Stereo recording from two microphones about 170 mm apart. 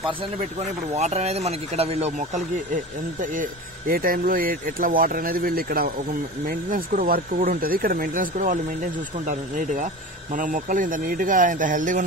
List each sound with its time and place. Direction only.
0.9 s speech: 40° right (ahead or behind)